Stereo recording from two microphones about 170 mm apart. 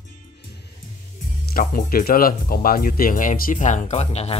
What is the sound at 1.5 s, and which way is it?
Speech, 60° left (ahead or behind).